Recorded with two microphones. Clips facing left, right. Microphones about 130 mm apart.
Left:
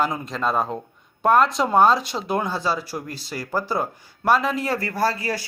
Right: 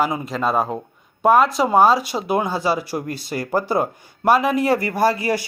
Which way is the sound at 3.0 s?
55° right (ahead or behind).